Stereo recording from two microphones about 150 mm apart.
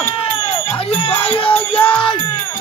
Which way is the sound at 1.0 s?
40° left (ahead or behind).